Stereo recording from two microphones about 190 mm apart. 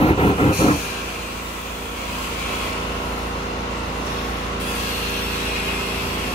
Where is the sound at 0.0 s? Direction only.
30° left (ahead or behind).